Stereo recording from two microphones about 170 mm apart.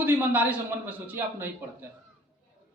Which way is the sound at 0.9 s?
10° right (ahead or behind).